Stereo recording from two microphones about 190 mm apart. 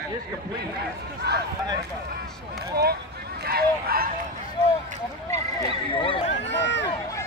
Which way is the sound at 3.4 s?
55° right (ahead or behind).